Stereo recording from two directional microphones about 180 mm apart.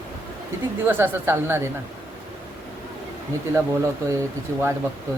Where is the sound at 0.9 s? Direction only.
10° right (ahead or behind).